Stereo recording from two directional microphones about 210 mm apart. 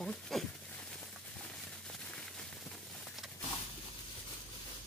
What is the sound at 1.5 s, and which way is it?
Firecracker, 5° left (ahead or behind).